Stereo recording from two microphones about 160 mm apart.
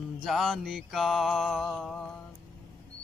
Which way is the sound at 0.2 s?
Centre (ahead or behind).